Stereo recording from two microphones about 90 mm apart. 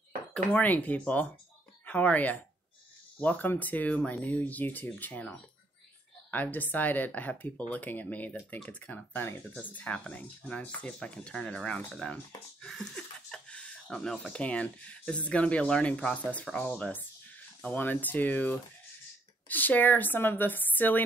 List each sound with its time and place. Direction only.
0.5 s speech: 20° left (ahead or behind)
6.3 s speech: 20° left (ahead or behind)
12.6 s a sound: 5° left (ahead or behind)
14.3 s speech: 15° left (ahead or behind)